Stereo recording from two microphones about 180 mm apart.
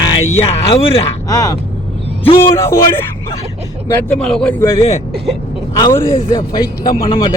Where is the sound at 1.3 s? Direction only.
20° left (ahead or behind).